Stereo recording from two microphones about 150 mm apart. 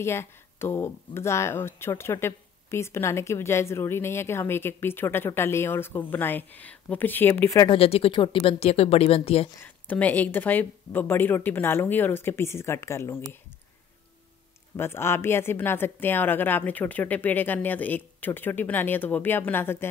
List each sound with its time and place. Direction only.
0.0 s speech: 15° left (ahead or behind)
7.7 s speech: 40° left (ahead or behind)
9.6 s speech: 10° left (ahead or behind)
14.8 s speech: 15° left (ahead or behind)